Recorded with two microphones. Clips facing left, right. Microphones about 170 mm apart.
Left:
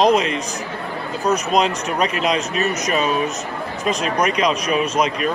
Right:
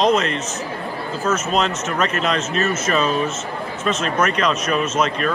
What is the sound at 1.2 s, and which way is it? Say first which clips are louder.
Speech: left 2 dB; 35° left (ahead or behind).